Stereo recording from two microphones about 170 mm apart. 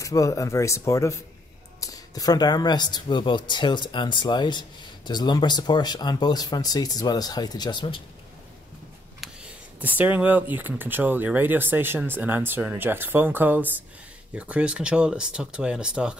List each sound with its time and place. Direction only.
0.0 s speech: 20° left (ahead or behind)
9.2 s speech: 5° right (ahead or behind)